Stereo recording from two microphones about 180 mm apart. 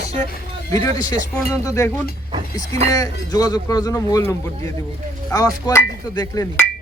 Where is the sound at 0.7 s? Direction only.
20° left (ahead or behind).